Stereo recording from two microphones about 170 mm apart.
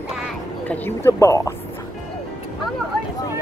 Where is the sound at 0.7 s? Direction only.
15° left (ahead or behind).